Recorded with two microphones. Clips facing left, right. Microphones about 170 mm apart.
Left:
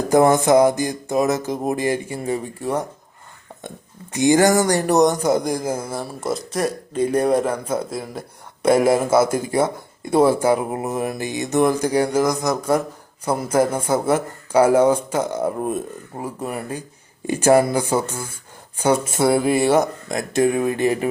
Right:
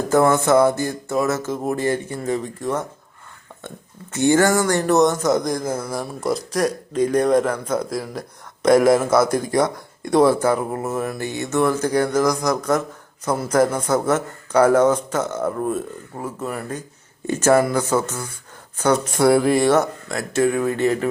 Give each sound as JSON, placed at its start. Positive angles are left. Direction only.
{"t": 0.1, "sound": "speech", "side_deg": 15}
{"t": 4.1, "sound": "speech", "side_deg": 15}